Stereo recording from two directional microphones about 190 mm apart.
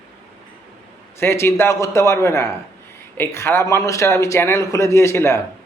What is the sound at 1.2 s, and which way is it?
A man's voice, 15° left (ahead or behind).